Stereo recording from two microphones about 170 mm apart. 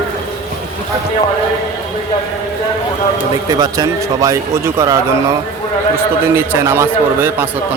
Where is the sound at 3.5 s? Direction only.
20° right (ahead or behind).